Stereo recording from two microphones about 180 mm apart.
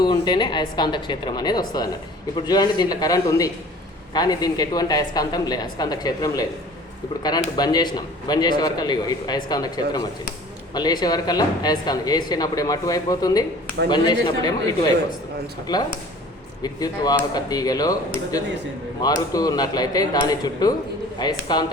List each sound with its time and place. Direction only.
0.0 s a man's voice: 25° left (ahead or behind)